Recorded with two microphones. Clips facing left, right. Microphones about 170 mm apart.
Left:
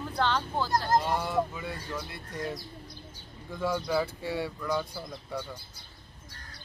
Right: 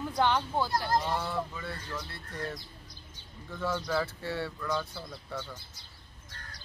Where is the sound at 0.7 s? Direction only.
45° left (ahead or behind).